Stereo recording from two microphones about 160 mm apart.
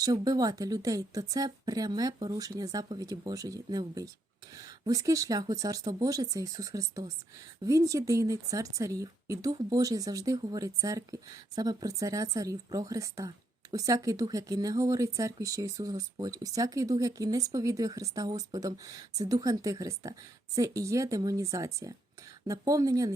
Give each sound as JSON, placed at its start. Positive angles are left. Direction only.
{"t": 0.0, "sound": "speech", "side_deg": -25}